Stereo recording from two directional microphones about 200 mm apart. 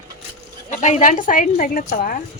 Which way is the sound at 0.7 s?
35° left (ahead or behind).